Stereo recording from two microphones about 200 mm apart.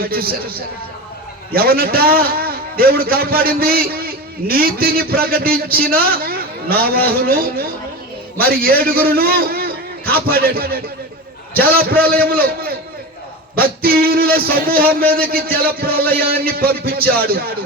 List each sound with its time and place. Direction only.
0.0 s a man's voice: 50° right (ahead or behind)
1.5 s a man's voice: 50° right (ahead or behind)